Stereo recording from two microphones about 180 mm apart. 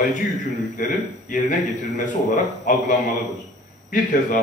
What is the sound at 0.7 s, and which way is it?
Speech, 50° left (ahead or behind).